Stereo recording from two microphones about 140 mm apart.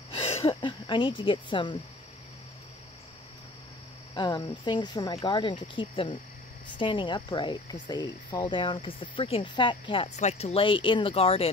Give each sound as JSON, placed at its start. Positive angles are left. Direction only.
{"t": 0.1, "sound": "speech", "side_deg": 45}
{"t": 4.1, "sound": "speech", "side_deg": 35}
{"t": 10.1, "sound": "speech", "side_deg": 50}